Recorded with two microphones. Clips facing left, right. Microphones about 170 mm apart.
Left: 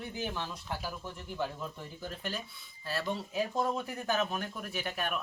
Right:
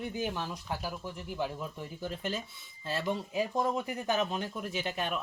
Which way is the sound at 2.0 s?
20° right (ahead or behind).